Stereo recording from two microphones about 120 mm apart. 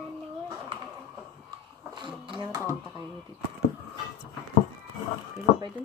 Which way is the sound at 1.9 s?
45° right (ahead or behind).